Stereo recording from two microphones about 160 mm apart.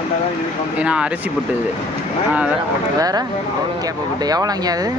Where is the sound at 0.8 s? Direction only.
5° right (ahead or behind).